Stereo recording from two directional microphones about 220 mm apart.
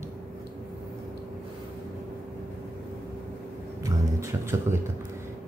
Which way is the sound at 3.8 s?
15° right (ahead or behind).